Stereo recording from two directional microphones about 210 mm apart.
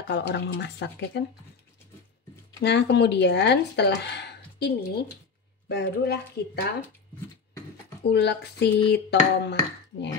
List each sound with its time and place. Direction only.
0.1 s speech: 55° left (ahead or behind)
2.6 s speech: 55° left (ahead or behind)
8.1 s speech: 55° left (ahead or behind)